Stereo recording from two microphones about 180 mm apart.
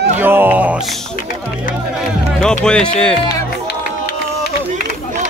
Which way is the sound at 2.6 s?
5° left (ahead or behind).